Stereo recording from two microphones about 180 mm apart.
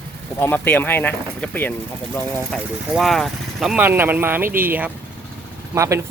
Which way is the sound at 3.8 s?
10° right (ahead or behind).